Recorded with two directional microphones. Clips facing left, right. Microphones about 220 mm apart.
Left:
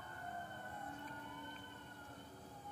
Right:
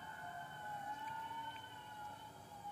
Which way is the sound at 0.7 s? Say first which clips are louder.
Left 1 dB; 50° left (ahead or behind).